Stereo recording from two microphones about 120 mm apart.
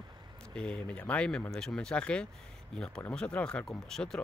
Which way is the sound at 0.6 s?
10° left (ahead or behind).